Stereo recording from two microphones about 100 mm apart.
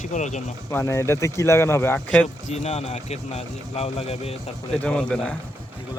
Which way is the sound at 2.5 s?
90° left.